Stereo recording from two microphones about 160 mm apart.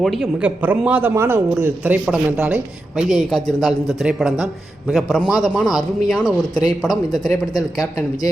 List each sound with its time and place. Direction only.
0.0 s a man's voice: centre (ahead or behind)
6.2 s speech: 25° left (ahead or behind)